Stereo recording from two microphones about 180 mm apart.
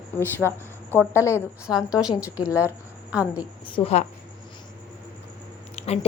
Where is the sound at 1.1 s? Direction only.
15° left (ahead or behind).